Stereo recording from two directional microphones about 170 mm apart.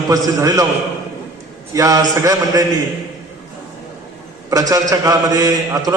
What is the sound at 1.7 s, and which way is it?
Speech, 20° right (ahead or behind).